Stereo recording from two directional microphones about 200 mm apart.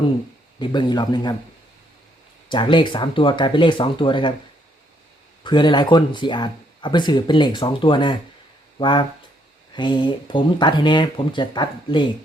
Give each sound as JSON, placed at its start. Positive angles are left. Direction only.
{"t": 0.6, "sound": "speech", "side_deg": 20}
{"t": 2.5, "sound": "speech", "side_deg": 25}
{"t": 5.4, "sound": "speech", "side_deg": 25}